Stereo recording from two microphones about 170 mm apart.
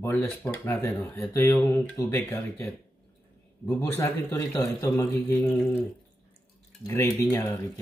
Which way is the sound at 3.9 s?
20° left (ahead or behind).